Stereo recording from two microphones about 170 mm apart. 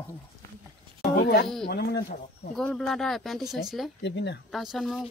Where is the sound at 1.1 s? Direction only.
70° left (ahead or behind).